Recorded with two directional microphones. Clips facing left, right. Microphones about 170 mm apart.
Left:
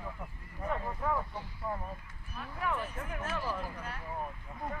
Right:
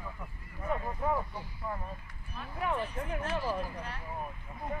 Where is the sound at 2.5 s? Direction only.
20° right (ahead or behind).